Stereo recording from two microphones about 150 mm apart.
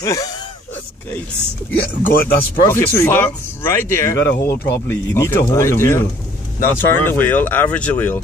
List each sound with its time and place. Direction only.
0.0 s speech: 25° left (ahead or behind)
1.7 s speech: 15° left (ahead or behind)